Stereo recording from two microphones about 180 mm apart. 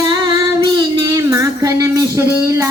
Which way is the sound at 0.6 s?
25° right (ahead or behind).